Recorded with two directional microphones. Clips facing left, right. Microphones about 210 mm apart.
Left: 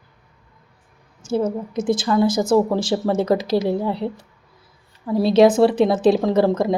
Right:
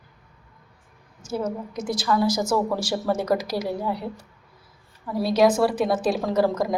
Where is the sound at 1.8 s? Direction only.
55° left (ahead or behind).